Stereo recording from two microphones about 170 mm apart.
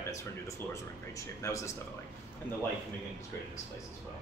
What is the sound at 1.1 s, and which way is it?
Speech, 20° left (ahead or behind).